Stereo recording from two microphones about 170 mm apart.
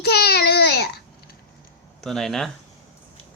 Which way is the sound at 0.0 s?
70° left (ahead or behind).